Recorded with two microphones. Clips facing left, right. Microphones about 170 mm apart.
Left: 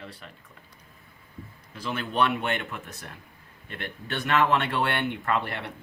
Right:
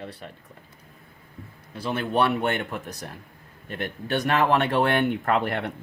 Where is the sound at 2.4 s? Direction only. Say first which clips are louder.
Right 4 dB; 40° right (ahead or behind).